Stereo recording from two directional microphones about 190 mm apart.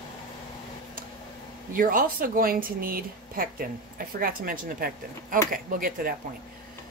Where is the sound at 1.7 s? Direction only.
50° right (ahead or behind).